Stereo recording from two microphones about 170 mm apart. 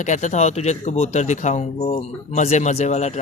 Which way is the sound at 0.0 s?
45° left (ahead or behind).